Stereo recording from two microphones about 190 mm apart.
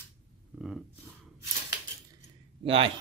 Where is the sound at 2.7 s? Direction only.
30° right (ahead or behind).